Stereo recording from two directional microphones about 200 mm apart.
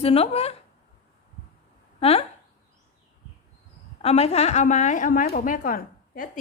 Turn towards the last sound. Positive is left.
turn(degrees=45)  # may be behind; listen again after turning